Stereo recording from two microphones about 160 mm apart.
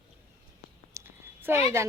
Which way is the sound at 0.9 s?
20° right (ahead or behind).